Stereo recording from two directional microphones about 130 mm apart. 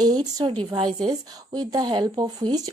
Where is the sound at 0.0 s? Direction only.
30° right (ahead or behind).